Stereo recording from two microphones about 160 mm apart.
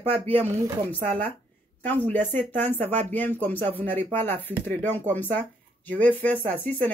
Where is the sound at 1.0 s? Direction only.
10° left (ahead or behind).